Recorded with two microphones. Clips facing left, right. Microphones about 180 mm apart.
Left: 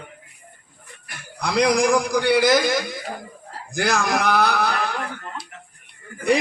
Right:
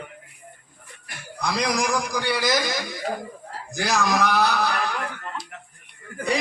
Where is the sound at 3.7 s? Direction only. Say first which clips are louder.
Left 1 dB; 55° left (ahead or behind).